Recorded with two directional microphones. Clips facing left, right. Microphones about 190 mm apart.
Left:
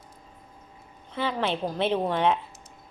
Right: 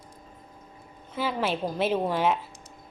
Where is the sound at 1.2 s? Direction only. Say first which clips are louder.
Even; 5° right (ahead or behind).